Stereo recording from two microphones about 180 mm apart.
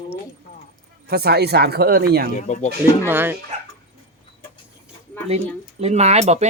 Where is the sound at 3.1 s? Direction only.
10° right (ahead or behind).